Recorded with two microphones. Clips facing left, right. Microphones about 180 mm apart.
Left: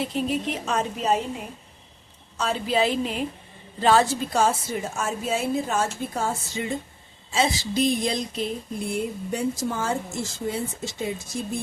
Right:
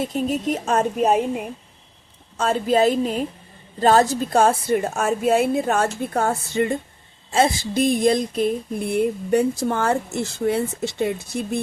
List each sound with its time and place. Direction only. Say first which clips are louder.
0.0 s speech: right 3 dB; 45° right (ahead or behind)
2.4 s speech: right 6 dB; 45° right (ahead or behind)
3.8 s a sound: right 3 dB; 45° right (ahead or behind); by 11.6 s 65° right (ahead or behind)